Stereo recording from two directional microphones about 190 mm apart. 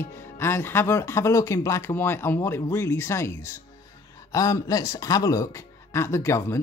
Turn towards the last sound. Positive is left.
turn(degrees=15)  # may be behind; listen again after turning